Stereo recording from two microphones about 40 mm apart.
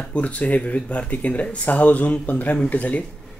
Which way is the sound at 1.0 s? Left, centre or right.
Left.